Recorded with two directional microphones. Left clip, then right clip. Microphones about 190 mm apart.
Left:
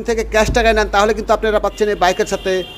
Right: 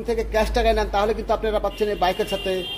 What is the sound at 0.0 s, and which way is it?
A man's voice, 25° left (ahead or behind).